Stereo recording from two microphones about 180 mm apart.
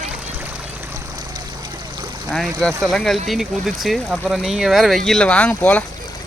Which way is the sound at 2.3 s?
5° left (ahead or behind).